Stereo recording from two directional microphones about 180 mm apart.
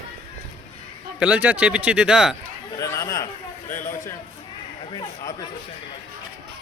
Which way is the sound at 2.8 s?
20° left (ahead or behind).